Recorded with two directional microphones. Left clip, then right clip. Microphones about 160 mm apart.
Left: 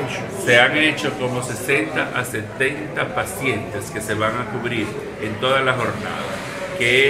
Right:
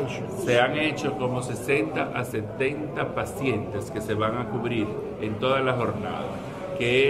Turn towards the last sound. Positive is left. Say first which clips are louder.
# left 6 dB
turn(degrees=-20)  # may be behind; listen again after turning